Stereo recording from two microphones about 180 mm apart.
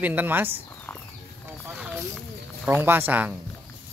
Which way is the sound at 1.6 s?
10° right (ahead or behind).